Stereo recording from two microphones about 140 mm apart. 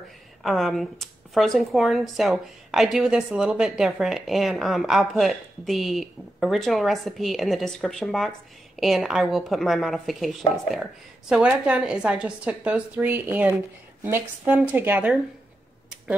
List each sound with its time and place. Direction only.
0.4 s speech: centre (ahead or behind)